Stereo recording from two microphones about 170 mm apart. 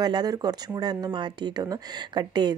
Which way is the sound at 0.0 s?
25° right (ahead or behind).